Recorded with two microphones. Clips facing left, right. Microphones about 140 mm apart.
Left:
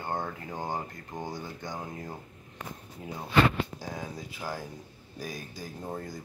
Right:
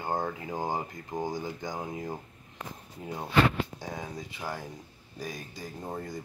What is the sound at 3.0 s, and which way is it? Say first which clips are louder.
Speech: even; centre (ahead or behind).